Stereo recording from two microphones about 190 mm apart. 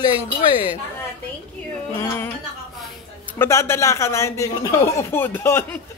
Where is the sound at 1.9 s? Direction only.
15° left (ahead or behind).